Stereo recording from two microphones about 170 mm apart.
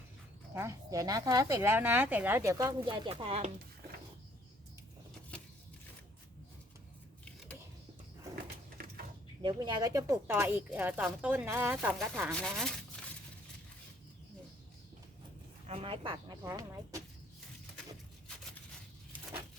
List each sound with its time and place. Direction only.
0.5 s a woman's voice: 15° right (ahead or behind); by 3.5 s 35° right (ahead or behind)
9.4 s speech: 25° right (ahead or behind); by 11.9 s 10° right (ahead or behind)
12.3 s speech: 5° left (ahead or behind)
15.6 s a woman's voice: 35° right (ahead or behind)